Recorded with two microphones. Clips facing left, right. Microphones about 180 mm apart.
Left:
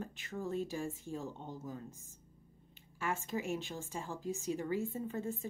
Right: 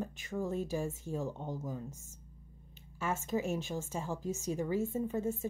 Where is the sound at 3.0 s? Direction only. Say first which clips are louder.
Right 3 dB; 20° right (ahead or behind).